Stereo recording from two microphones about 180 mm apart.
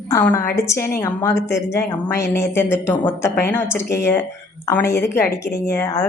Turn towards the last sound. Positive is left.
turn(degrees=15)  # may be behind; listen again after turning